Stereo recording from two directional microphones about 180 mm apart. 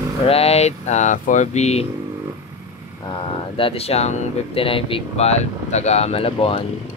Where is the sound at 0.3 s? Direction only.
35° left (ahead or behind).